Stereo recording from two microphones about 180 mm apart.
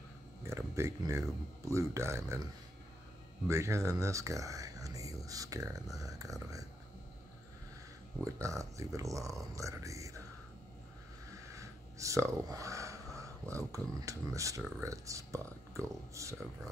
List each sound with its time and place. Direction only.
0.5 s speech: 15° right (ahead or behind)
3.4 s speech: 15° right (ahead or behind)
8.2 s speech: 15° right (ahead or behind)
11.4 s a sound: 15° right (ahead or behind)
13.7 s speech: 15° right (ahead or behind)